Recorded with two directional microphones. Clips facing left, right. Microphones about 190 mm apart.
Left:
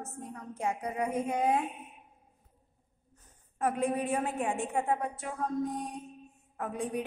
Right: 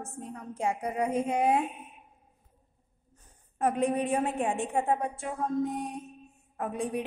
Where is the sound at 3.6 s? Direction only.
25° right (ahead or behind).